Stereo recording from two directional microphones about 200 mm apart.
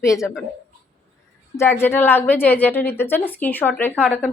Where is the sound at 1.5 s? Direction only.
10° left (ahead or behind).